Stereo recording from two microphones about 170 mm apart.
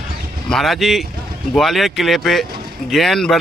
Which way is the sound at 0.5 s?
Centre (ahead or behind).